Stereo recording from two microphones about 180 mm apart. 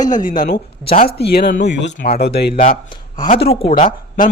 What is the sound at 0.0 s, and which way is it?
Speech, 45° left (ahead or behind).